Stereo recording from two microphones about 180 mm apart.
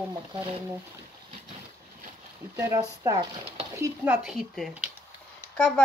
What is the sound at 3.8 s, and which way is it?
Speech, 5° right (ahead or behind).